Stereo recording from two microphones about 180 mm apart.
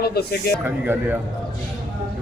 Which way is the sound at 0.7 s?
10° right (ahead or behind).